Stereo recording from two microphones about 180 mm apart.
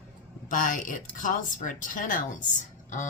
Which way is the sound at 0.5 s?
45° left (ahead or behind).